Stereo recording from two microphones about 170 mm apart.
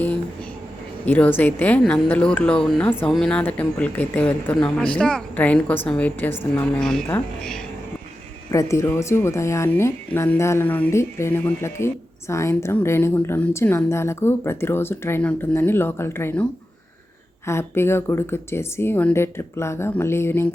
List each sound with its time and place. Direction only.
1.0 s speech: 10° left (ahead or behind)
8.4 s speech: 20° left (ahead or behind)